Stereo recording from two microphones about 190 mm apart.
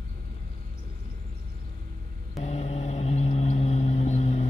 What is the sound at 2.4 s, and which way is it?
Vehicle, 35° left (ahead or behind).